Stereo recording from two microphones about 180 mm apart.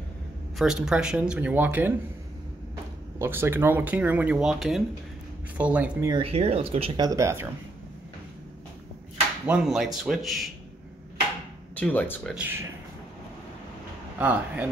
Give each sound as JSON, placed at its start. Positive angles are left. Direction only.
{"t": 0.6, "sound": "speech", "side_deg": -5}
{"t": 3.2, "sound": "speech", "side_deg": -15}
{"t": 6.0, "sound": "speech", "side_deg": -30}
{"t": 7.0, "sound": "speech", "side_deg": -20}
{"t": 9.5, "sound": "speech", "side_deg": -5}
{"t": 11.7, "sound": "speech", "side_deg": 10}
{"t": 12.4, "sound": "speech", "side_deg": -10}
{"t": 14.1, "sound": "speech", "side_deg": -10}